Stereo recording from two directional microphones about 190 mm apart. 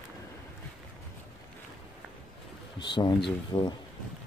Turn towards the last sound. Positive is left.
turn(degrees=25)  # may be behind; listen again after turning